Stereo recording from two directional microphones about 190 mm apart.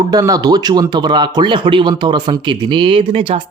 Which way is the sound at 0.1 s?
20° right (ahead or behind).